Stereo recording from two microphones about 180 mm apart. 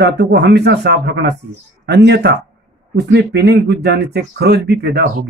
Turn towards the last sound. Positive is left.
turn(degrees=-65)  # may be behind; listen again after turning